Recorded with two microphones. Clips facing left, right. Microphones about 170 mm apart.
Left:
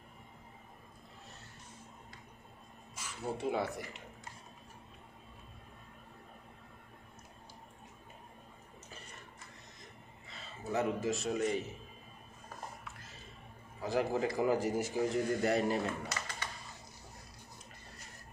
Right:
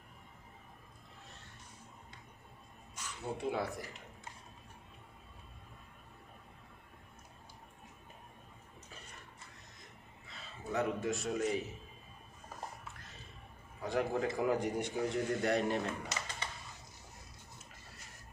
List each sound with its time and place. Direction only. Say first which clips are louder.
2.9 s speech: left 2 dB; 5° left (ahead or behind)
10.2 s a man's voice: left 2 dB; centre (ahead or behind)
13.8 s speech: left 1 dB; centre (ahead or behind)
16.0 s computer keyboard: left 1 dB; 20° right (ahead or behind)